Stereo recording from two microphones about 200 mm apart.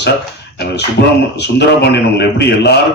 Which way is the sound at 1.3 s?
60° left (ahead or behind).